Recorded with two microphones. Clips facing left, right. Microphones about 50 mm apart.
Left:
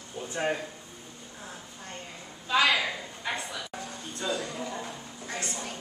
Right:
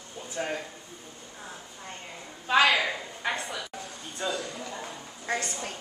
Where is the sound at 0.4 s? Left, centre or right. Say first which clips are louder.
Left 3 dB; left.